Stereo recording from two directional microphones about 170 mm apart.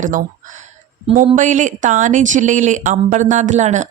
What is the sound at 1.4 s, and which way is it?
Speech, 50° right (ahead or behind).